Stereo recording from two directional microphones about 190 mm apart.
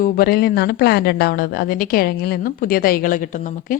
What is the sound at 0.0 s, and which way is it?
A woman's voice, 50° left (ahead or behind).